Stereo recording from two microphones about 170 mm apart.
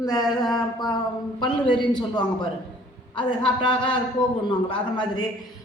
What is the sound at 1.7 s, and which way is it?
A woman's voice, 25° left (ahead or behind).